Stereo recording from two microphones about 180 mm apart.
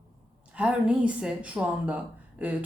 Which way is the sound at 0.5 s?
5° right (ahead or behind).